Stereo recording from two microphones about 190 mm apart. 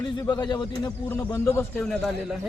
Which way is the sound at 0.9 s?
10° left (ahead or behind).